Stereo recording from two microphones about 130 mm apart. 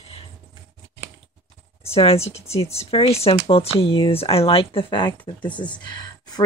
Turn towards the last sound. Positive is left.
turn(degrees=35)  # may be behind; listen again after turning